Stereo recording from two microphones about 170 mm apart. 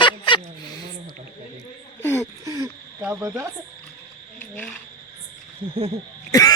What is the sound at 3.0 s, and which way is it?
Frog, 10° right (ahead or behind).